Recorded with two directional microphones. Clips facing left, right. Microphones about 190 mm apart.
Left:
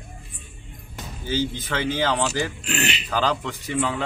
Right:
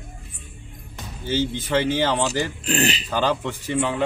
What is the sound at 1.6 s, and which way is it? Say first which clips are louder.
Speech: right 3 dB; 15° right (ahead or behind).